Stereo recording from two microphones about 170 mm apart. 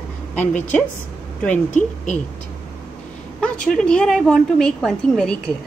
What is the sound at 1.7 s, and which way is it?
Speech, 45° left (ahead or behind).